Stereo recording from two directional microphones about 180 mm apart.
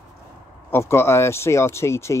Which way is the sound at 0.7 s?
15° left (ahead or behind).